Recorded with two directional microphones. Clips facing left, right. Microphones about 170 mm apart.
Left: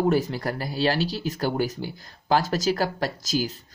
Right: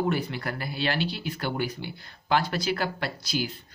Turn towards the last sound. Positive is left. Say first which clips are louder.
# left 4 dB
turn(degrees=40)  # may be behind; listen again after turning